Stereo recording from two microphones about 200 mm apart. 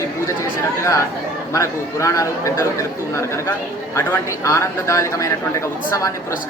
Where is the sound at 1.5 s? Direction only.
15° left (ahead or behind).